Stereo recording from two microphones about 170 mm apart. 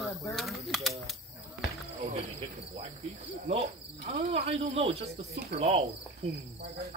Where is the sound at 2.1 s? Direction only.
35° right (ahead or behind).